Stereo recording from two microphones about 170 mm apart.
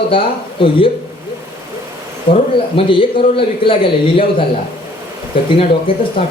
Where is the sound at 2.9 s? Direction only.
30° left (ahead or behind).